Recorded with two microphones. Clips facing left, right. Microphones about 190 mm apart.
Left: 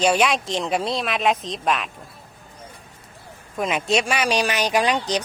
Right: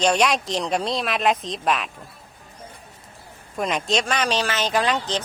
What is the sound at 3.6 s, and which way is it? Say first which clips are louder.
Speech: left 2 dB; 5° left (ahead or behind).